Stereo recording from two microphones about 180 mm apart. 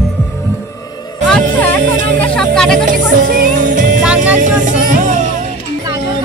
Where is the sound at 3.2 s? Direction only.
50° right (ahead or behind).